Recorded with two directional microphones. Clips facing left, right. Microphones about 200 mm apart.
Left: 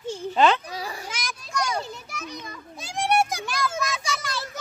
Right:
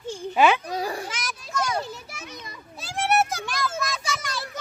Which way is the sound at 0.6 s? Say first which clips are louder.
Right 6 dB; 45° right (ahead or behind).